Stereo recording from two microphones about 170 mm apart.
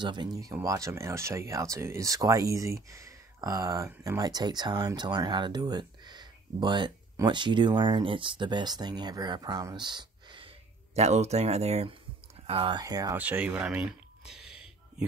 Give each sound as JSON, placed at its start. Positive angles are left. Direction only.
{"t": 0.0, "sound": "speech", "side_deg": -25}
{"t": 11.0, "sound": "speech", "side_deg": -40}
{"t": 13.2, "sound": "a sound", "side_deg": -10}